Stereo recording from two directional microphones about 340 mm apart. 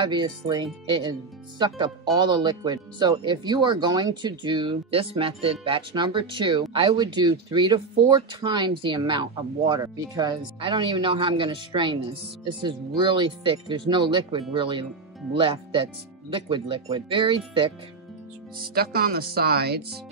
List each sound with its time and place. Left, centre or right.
0.0 s speech: centre
18.6 s speech: right